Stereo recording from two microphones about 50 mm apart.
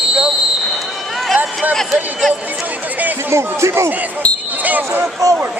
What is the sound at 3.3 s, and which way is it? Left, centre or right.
Speech, right.